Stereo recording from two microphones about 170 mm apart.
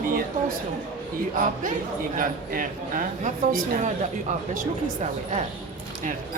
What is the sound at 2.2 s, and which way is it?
A woman's voice, 55° right (ahead or behind).